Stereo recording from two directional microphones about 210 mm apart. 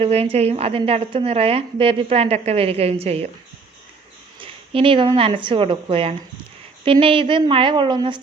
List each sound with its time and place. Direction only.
0.0 s a woman's voice: 30° right (ahead or behind)
4.4 s a woman's voice: 25° right (ahead or behind)